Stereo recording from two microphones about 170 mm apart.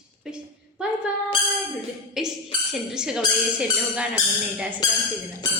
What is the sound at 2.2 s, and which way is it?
Speech, centre (ahead or behind).